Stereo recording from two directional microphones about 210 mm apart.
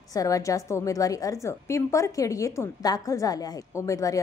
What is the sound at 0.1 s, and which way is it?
A woman's voice, 15° left (ahead or behind).